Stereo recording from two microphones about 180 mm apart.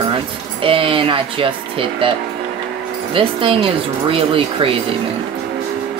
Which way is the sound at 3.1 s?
30° right (ahead or behind).